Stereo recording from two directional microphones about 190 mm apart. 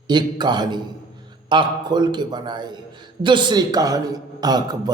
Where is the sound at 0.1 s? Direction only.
25° right (ahead or behind).